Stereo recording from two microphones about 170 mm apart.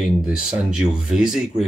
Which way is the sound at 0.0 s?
5° right (ahead or behind).